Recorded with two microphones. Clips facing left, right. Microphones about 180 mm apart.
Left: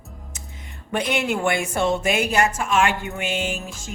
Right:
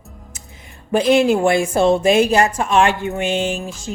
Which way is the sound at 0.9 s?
30° right (ahead or behind).